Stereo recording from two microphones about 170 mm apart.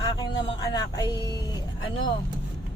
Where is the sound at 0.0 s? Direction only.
20° left (ahead or behind).